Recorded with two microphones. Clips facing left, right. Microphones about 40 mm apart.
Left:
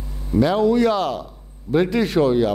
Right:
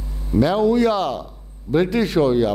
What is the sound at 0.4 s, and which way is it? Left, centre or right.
A man's voice, left.